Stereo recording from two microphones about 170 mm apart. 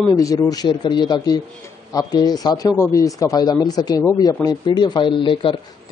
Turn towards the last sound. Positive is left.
turn(degrees=30)  # may be behind; listen again after turning